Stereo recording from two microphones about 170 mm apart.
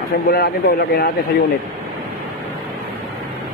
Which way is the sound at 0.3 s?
65° left (ahead or behind).